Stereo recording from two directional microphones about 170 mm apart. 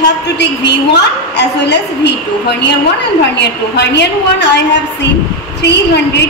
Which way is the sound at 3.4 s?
90° left.